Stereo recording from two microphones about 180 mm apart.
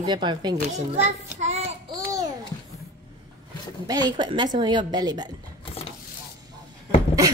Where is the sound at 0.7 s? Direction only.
40° right (ahead or behind).